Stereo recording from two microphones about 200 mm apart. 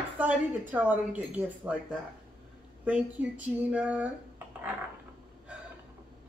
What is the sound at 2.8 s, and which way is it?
Speech, 5° right (ahead or behind).